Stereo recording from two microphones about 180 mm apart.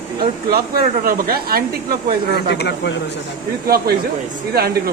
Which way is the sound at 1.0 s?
55° right (ahead or behind).